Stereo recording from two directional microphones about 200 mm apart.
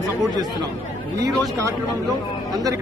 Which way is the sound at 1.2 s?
20° right (ahead or behind).